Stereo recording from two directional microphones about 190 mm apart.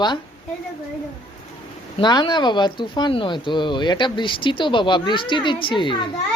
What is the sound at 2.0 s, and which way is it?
Speech, 25° left (ahead or behind).